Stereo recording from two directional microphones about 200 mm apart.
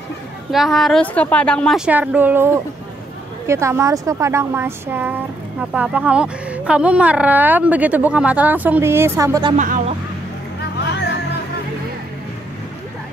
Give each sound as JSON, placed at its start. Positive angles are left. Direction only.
{"t": 0.5, "sound": "a woman's voice", "side_deg": 0}
{"t": 1.9, "sound": "speech", "side_deg": -10}
{"t": 9.6, "sound": "speech", "side_deg": -40}
{"t": 10.8, "sound": "music", "side_deg": 60}